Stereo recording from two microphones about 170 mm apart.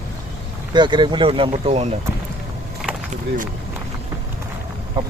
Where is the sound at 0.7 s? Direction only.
25° right (ahead or behind).